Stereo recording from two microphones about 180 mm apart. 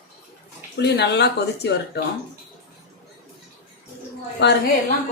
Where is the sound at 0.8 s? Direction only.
70° left (ahead or behind).